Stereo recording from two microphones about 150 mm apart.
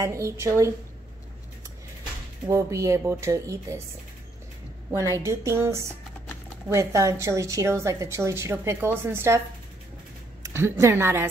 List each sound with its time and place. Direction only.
0.0 s a woman's voice: 20° right (ahead or behind)
2.4 s a woman's voice: 20° right (ahead or behind)
4.9 s a woman's voice: 20° right (ahead or behind)
10.4 s a woman's voice: 15° right (ahead or behind)